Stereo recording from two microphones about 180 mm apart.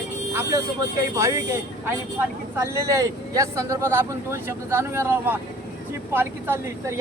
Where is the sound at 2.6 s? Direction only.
15° right (ahead or behind).